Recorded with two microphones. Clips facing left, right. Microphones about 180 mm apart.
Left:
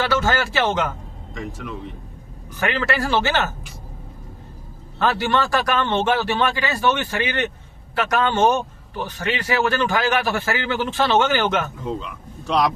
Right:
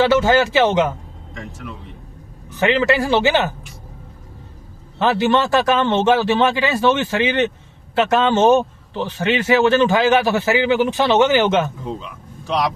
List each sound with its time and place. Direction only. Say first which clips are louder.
0.0 s a man's voice: right 7 dB; 20° right (ahead or behind)
2.6 s a man's voice: right 6 dB; 20° right (ahead or behind)
4.9 s a man's voice: right 4 dB; 20° right (ahead or behind)